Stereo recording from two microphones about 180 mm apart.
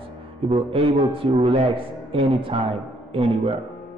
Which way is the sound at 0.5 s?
30° right (ahead or behind).